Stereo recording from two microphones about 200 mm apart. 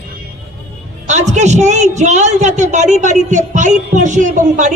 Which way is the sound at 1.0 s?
35° right (ahead or behind).